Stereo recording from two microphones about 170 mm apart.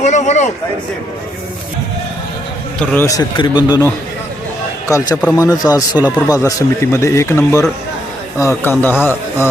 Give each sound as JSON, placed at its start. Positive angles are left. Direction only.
{"t": 0.0, "sound": "speech", "side_deg": 45}
{"t": 2.9, "sound": "speech", "side_deg": 15}